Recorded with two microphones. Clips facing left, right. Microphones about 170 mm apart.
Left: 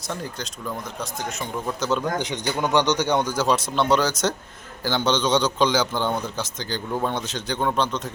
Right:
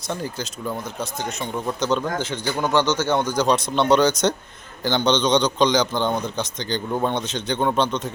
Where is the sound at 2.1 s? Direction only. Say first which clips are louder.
Right 1 dB; 15° left (ahead or behind).